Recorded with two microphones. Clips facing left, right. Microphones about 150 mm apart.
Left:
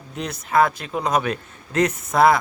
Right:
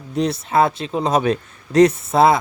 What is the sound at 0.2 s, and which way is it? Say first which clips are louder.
Speech: right 3 dB; 30° right (ahead or behind).